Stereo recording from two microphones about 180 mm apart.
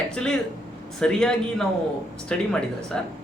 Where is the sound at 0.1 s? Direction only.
5° left (ahead or behind).